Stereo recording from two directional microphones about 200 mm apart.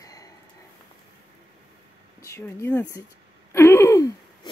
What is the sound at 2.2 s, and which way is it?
Speech, 15° left (ahead or behind).